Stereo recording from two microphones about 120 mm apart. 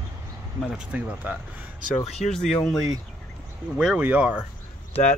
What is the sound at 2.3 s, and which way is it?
Speech, 5° left (ahead or behind).